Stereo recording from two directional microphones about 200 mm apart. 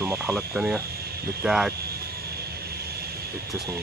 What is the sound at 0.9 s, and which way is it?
Cricket, 50° right (ahead or behind).